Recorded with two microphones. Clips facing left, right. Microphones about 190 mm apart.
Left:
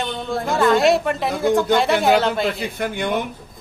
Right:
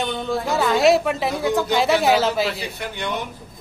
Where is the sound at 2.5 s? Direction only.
50° left (ahead or behind).